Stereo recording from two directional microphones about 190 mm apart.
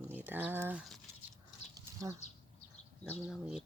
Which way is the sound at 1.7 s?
15° right (ahead or behind).